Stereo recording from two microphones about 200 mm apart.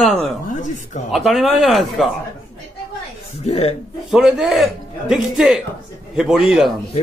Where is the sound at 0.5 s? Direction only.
40° left (ahead or behind).